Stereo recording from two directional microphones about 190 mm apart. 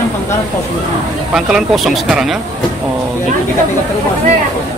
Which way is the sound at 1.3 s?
5° right (ahead or behind).